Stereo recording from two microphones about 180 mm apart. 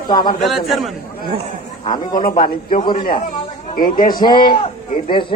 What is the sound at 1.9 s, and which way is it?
Speech, 20° left (ahead or behind).